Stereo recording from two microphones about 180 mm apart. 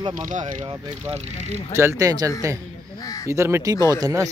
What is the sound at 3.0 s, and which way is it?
Crow, 20° left (ahead or behind).